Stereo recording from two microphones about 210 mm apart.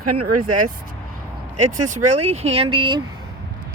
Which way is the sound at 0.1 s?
90° right.